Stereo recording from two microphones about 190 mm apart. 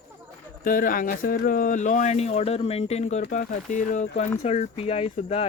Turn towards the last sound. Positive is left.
turn(degrees=30)  # may be behind; listen again after turning